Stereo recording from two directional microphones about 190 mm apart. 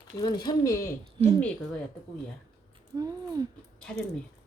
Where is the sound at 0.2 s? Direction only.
20° left (ahead or behind).